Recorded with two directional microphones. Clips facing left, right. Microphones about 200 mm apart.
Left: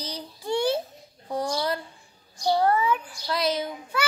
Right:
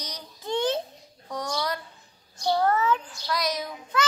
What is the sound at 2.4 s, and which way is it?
Speech, 10° left (ahead or behind).